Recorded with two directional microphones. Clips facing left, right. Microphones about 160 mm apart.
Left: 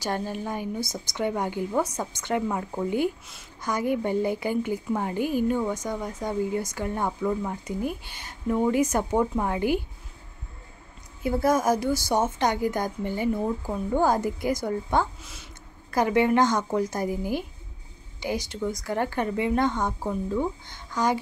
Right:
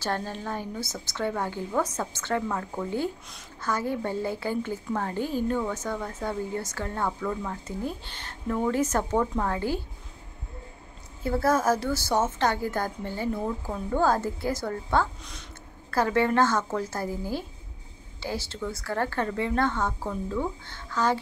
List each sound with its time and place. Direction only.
0.0 s a woman's voice: 15° left (ahead or behind)
11.2 s a woman's voice: 15° left (ahead or behind)